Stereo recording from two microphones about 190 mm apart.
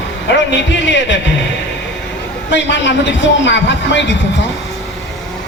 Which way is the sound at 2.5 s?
70° left (ahead or behind).